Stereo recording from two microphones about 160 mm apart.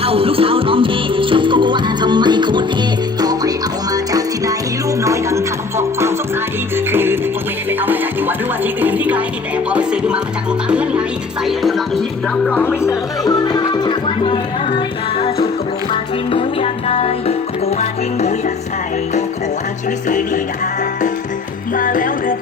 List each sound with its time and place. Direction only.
0.0 s music: 35° right (ahead or behind); by 12.0 s centre (ahead or behind)
12.5 s speech: 10° left (ahead or behind); by 14.3 s 30° left (ahead or behind)
15.9 s music: 35° left (ahead or behind)
20.1 s music: 55° left (ahead or behind)
21.8 s music: 60° left (ahead or behind)